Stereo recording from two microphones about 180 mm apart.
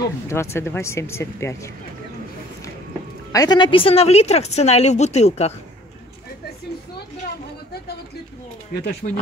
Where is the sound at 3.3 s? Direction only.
20° left (ahead or behind); by 5.5 s 35° left (ahead or behind).